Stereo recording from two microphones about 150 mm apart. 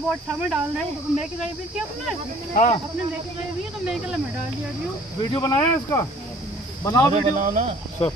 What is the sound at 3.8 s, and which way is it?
Speech, 5° right (ahead or behind).